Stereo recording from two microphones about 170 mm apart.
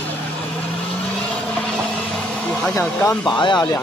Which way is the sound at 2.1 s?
5° left (ahead or behind).